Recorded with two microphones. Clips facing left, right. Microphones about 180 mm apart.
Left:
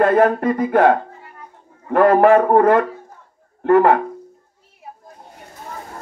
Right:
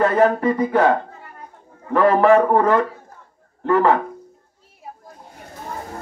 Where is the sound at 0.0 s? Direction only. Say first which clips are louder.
Left 2 dB; 55° left (ahead or behind).